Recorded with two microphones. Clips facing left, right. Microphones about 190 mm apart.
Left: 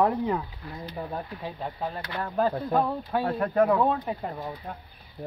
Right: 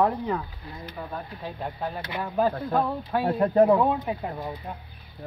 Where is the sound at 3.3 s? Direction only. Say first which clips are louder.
Right 4 dB; 25° right (ahead or behind).